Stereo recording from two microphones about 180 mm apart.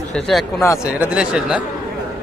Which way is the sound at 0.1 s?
Centre (ahead or behind).